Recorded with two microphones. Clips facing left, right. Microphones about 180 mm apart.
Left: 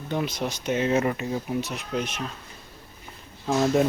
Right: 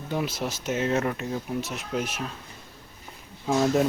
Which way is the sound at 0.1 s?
5° right (ahead or behind).